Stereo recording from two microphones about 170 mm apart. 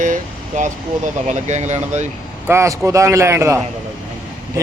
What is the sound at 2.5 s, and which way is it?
A man's voice, 15° right (ahead or behind).